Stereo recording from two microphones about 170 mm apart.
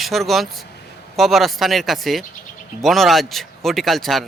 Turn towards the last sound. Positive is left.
turn(degrees=0)  # may be behind; listen again after turning